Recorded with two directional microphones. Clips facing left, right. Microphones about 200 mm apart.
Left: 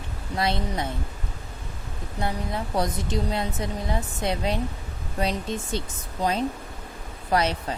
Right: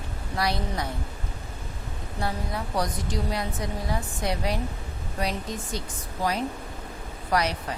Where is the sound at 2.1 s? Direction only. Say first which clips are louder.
Left 2 dB; 20° left (ahead or behind).